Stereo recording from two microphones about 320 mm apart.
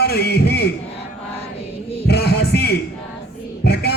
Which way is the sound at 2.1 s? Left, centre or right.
Left.